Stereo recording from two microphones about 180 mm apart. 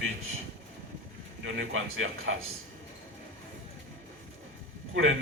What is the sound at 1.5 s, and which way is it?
Speech, 90° right.